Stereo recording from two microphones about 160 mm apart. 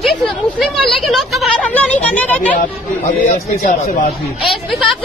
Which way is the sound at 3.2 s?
55° left (ahead or behind).